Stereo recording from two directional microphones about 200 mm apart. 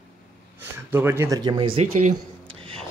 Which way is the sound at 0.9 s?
10° right (ahead or behind).